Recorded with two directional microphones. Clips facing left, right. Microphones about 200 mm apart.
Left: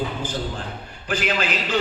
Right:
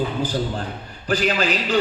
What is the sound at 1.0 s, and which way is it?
Speech, 35° right (ahead or behind).